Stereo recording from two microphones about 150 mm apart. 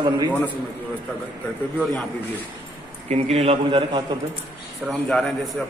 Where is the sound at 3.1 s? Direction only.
45° right (ahead or behind).